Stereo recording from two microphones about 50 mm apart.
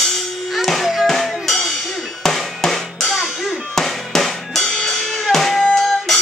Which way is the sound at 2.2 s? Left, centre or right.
Centre.